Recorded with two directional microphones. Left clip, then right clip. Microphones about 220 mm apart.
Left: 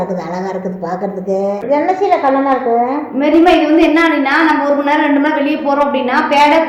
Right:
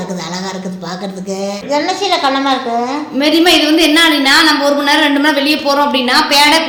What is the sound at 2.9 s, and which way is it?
A woman's voice, 50° right (ahead or behind).